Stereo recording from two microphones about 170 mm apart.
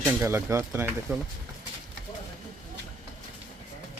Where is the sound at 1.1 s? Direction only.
5° right (ahead or behind).